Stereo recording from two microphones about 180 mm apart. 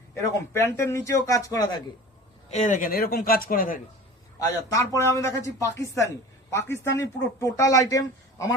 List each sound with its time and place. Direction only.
0.3 s a man's voice: 15° left (ahead or behind)
2.5 s a man's voice: 40° left (ahead or behind)
4.4 s a man's voice: 20° left (ahead or behind)